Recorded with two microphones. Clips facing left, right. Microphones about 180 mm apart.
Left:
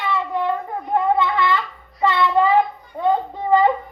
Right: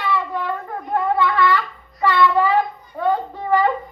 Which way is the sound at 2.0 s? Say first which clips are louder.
Even; 20° left (ahead or behind).